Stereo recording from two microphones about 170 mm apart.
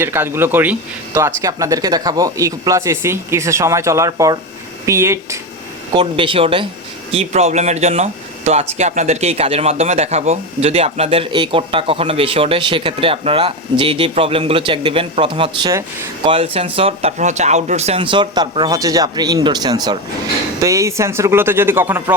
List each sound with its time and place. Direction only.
0.0 s speech: 15° right (ahead or behind)
5.9 s speech: 30° right (ahead or behind)
16.2 s speech: 35° right (ahead or behind); by 22.0 s 15° right (ahead or behind)